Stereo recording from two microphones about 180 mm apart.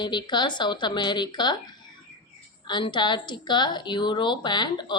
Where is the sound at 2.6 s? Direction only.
25° left (ahead or behind).